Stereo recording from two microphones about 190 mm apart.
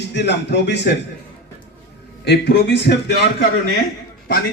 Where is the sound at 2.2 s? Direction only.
65° left (ahead or behind).